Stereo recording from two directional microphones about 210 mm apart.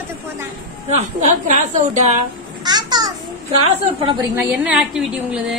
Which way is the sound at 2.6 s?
20° right (ahead or behind).